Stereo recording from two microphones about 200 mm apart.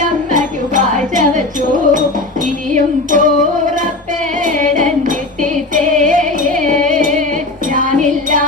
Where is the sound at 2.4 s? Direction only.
40° right (ahead or behind).